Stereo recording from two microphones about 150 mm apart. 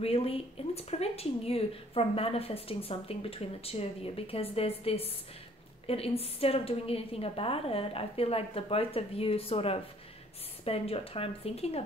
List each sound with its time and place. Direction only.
0.0 s speech: 40° left (ahead or behind)